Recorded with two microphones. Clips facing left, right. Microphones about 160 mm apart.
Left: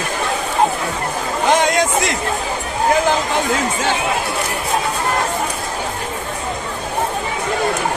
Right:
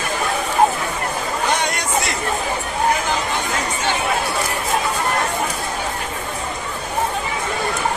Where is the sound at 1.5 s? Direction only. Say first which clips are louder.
Left 8 dB; 90° left.